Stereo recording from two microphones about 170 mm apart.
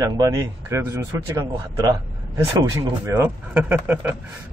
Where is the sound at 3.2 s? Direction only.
10° right (ahead or behind).